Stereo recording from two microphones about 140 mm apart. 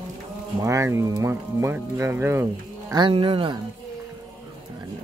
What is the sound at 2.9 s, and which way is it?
Speech, 35° right (ahead or behind).